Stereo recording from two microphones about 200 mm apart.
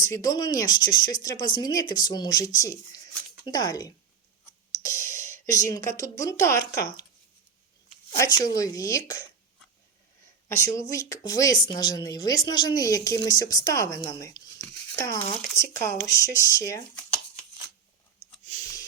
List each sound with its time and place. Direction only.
0.0 s speech: 15° left (ahead or behind)
8.5 s speech: 15° left (ahead or behind)
10.7 s speech: 15° left (ahead or behind)